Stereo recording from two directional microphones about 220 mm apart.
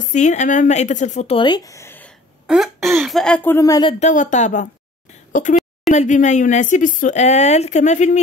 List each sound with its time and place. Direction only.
0.1 s speech: 35° left (ahead or behind); by 2.1 s 10° left (ahead or behind)
2.4 s a sound: centre (ahead or behind)
3.0 s speech: centre (ahead or behind)
4.0 s a woman's voice: 35° left (ahead or behind)